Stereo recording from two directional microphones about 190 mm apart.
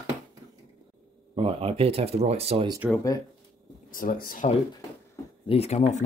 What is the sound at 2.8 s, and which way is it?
Speech, 10° left (ahead or behind).